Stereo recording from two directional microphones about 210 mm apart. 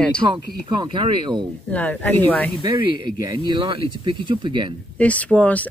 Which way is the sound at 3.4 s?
20° right (ahead or behind).